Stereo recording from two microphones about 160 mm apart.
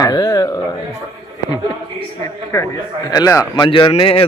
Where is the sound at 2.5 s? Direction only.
15° left (ahead or behind); by 4.2 s 35° left (ahead or behind).